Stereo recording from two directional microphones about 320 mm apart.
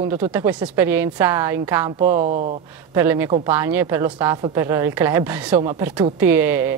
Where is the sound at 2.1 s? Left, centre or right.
Right.